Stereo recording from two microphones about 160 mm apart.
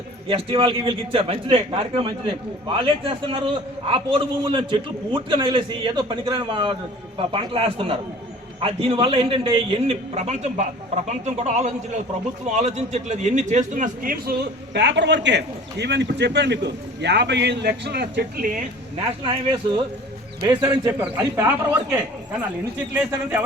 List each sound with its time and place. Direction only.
0.3 s a man's voice: 35° right (ahead or behind); by 18.6 s 60° right (ahead or behind)
18.9 s a man's voice: 35° right (ahead or behind)
20.5 s a man's voice: 15° right (ahead or behind)